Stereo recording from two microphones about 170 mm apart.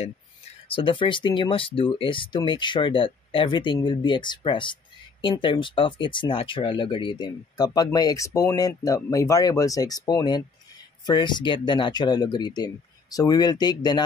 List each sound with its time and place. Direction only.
0.7 s speech: 30° left (ahead or behind)